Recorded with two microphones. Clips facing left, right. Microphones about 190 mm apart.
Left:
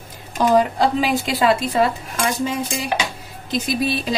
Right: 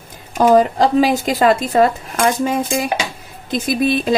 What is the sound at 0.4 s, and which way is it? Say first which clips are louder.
Speech: right 4 dB; 50° right (ahead or behind).